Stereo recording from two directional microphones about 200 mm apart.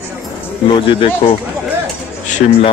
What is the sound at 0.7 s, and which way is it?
Speech, 25° left (ahead or behind).